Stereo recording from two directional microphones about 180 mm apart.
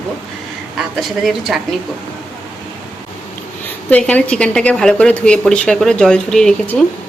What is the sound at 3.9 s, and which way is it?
A woman's voice, 5° left (ahead or behind).